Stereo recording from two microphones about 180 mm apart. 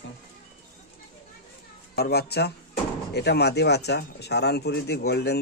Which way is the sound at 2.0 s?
60° left (ahead or behind).